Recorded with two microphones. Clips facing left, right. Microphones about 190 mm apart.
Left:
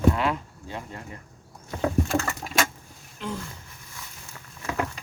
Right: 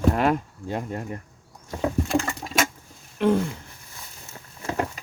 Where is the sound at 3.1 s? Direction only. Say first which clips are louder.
Right 13 dB; 65° right (ahead or behind).